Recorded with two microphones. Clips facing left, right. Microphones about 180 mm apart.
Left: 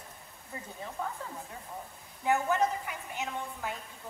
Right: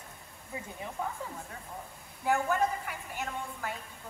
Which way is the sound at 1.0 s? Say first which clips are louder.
Right 1 dB; 10° right (ahead or behind).